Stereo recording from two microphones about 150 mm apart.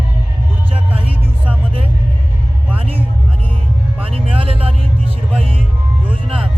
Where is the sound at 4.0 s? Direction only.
35° right (ahead or behind).